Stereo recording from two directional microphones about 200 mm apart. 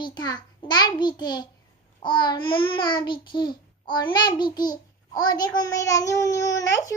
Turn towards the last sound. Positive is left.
turn(degrees=15)  # may be behind; listen again after turning